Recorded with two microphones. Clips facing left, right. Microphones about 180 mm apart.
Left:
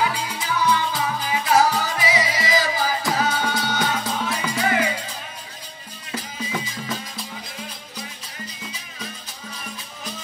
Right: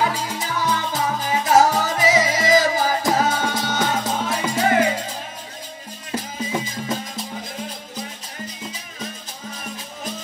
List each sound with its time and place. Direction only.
0.0 s music: 40° right (ahead or behind)